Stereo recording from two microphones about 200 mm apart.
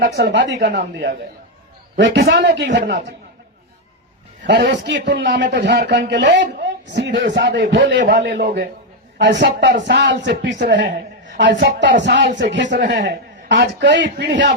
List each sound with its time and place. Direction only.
0.0 s a man's voice: 55° right (ahead or behind)
4.4 s a man's voice: 60° right (ahead or behind)